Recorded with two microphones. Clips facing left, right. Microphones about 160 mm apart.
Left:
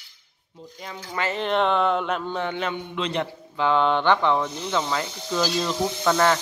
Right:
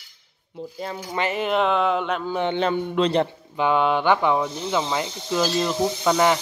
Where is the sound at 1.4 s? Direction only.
5° right (ahead or behind).